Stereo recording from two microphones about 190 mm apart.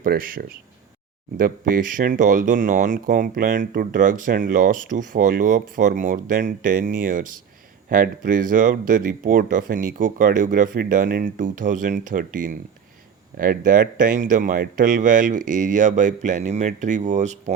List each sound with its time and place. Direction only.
0.0 s speech: 50° right (ahead or behind)